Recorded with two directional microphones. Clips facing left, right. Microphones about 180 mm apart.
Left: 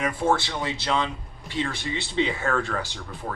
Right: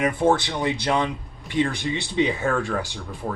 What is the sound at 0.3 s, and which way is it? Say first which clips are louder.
Speech: right 3 dB; 20° right (ahead or behind).